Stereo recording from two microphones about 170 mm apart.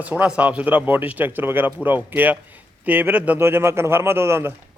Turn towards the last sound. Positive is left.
turn(degrees=-15)  # may be behind; listen again after turning